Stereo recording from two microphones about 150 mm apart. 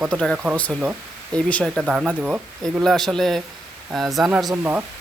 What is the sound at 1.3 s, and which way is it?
Speech, 5° left (ahead or behind).